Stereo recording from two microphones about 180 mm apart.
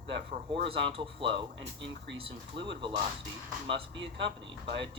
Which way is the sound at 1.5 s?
90° right.